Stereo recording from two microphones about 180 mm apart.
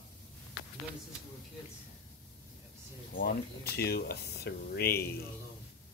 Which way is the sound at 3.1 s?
55° left (ahead or behind).